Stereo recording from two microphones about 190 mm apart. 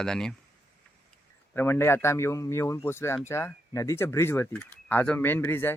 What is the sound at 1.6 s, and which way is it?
Speech, 10° left (ahead or behind).